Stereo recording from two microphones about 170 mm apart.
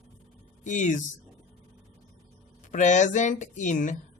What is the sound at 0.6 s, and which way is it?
Speech, 45° left (ahead or behind).